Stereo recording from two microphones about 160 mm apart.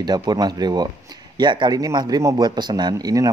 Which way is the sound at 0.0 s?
25° right (ahead or behind).